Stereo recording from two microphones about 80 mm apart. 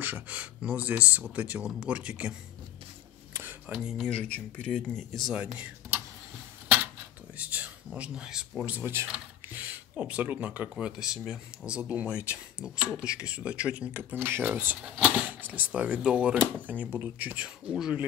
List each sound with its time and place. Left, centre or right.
0.0 s speech: centre
3.6 s speech: centre
4.0 s speech: centre
5.3 s speech: centre
7.3 s a sound: centre
8.7 s speech: right
9.5 s speech: centre